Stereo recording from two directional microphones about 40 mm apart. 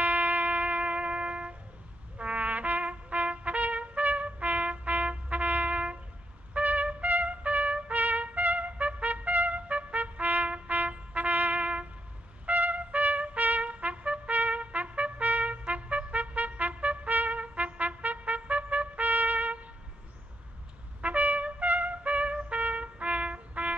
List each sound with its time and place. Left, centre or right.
0.0 s music: right
2.1 s trumpet: right
21.0 s trumpet: right